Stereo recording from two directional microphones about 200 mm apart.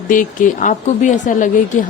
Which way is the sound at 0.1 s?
40° left (ahead or behind).